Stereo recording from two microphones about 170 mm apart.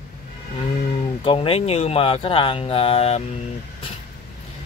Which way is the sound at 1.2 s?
30° left (ahead or behind).